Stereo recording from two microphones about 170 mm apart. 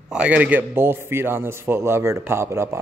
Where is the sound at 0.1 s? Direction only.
10° right (ahead or behind).